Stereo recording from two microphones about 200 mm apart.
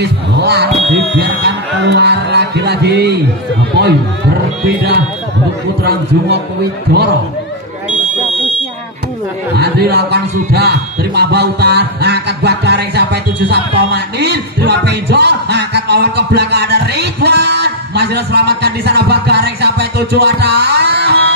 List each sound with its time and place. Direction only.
0.0 s heart sounds: 55° right (ahead or behind)
1.2 s music: 60° right (ahead or behind)
5.9 s heart sounds: 55° right (ahead or behind)
9.6 s speech: 55° right (ahead or behind)